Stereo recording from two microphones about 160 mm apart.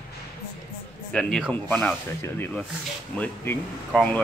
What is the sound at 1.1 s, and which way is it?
Speech, 5° left (ahead or behind).